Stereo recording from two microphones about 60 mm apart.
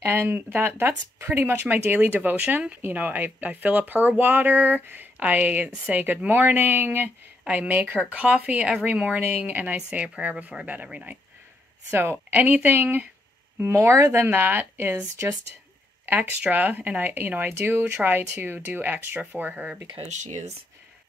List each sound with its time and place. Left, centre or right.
0.1 s speech: right
9.8 s speech: centre
11.9 s speech: right
13.7 s speech: right
14.2 s speech: right
16.1 s speech: right